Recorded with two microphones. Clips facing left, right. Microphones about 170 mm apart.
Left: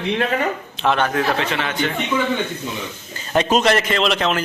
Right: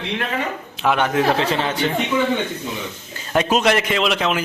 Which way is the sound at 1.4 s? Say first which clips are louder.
Right 3 dB; 35° right (ahead or behind).